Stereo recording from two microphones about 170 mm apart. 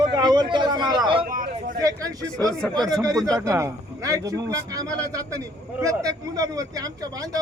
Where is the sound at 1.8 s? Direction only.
20° right (ahead or behind).